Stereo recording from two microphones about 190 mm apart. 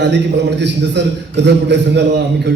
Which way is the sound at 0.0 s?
65° right (ahead or behind).